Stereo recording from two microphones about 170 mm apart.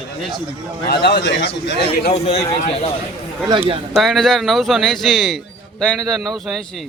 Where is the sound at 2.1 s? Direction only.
40° left (ahead or behind).